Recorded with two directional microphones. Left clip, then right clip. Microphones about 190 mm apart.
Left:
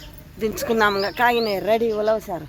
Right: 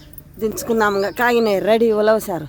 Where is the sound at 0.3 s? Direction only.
35° right (ahead or behind).